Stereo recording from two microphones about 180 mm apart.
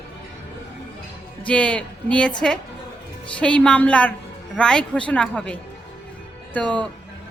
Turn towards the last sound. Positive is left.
turn(degrees=10)  # may be behind; listen again after turning